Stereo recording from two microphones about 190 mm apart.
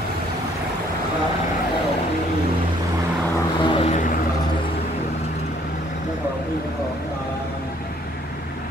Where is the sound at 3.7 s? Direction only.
35° left (ahead or behind).